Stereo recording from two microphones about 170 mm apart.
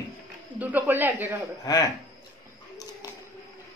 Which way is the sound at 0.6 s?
10° right (ahead or behind).